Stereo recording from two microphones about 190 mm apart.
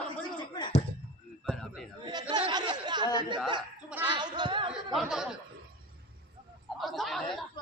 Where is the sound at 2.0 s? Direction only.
25° right (ahead or behind).